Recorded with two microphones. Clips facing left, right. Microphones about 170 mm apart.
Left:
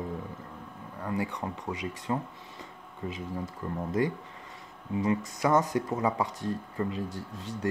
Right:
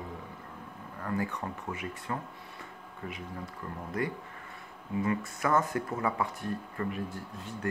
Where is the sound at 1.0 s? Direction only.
15° left (ahead or behind).